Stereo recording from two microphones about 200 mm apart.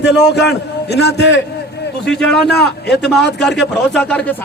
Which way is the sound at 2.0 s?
5° left (ahead or behind).